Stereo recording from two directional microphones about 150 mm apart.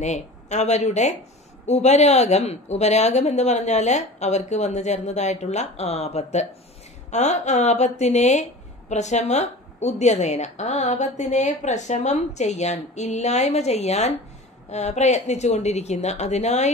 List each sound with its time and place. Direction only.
0.0 s a woman's voice: 50° left (ahead or behind)